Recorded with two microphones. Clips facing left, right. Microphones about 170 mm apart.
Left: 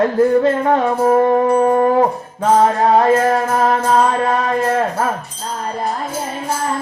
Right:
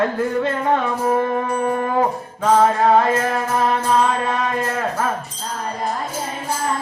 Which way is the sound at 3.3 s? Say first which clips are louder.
Left 4 dB; 40° left (ahead or behind).